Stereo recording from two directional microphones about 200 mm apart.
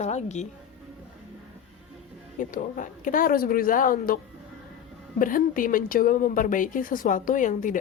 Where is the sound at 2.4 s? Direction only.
40° left (ahead or behind).